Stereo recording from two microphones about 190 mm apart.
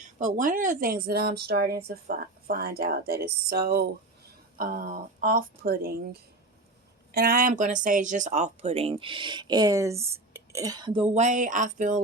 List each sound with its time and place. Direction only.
0.0 s speech: 40° right (ahead or behind); by 11.0 s 25° right (ahead or behind)
11.1 s speech: 40° right (ahead or behind)